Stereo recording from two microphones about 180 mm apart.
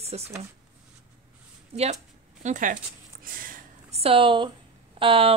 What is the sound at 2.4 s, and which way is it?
Speech, 45° right (ahead or behind).